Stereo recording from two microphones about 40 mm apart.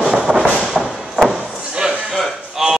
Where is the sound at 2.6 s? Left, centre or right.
Centre.